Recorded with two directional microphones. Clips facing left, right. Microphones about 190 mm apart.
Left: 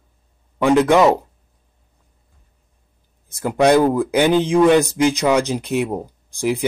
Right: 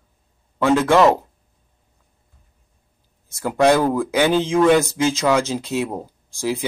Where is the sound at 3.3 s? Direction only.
15° left (ahead or behind).